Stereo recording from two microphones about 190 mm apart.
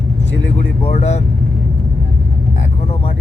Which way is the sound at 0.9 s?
35° left (ahead or behind).